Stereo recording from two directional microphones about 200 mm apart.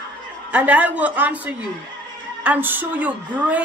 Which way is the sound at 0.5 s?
5° right (ahead or behind).